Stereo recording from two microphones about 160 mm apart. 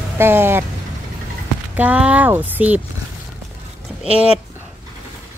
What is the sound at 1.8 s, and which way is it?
Speech, 10° right (ahead or behind).